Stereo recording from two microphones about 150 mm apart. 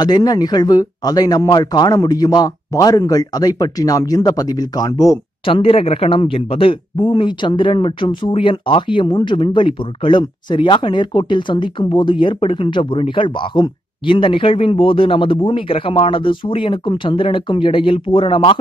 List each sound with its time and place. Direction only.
0.0 s speech: 25° left (ahead or behind)
5.4 s speech: 35° left (ahead or behind)